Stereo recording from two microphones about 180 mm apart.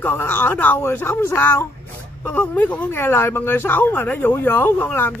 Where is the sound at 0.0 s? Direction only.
10° left (ahead or behind).